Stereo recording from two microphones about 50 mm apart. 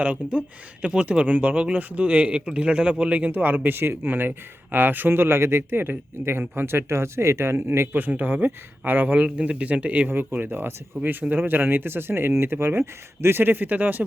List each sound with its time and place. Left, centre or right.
0.0 s speech: right
6.7 s speech: right
7.9 s speech: right
10.1 s speech: right